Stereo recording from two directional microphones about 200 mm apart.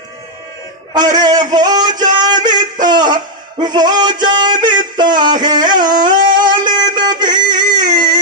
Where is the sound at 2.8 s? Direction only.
20° right (ahead or behind).